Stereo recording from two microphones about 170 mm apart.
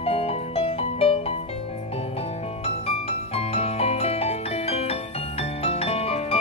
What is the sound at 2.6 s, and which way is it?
Music, 35° left (ahead or behind).